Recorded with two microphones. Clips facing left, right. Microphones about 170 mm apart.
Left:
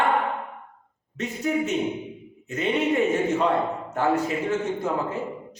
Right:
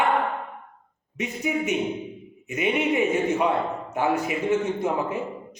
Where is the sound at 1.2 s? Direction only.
15° right (ahead or behind).